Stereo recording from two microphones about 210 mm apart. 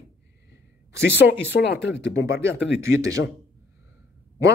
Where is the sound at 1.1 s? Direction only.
10° right (ahead or behind).